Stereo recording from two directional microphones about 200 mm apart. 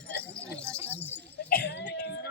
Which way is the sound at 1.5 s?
50° left (ahead or behind).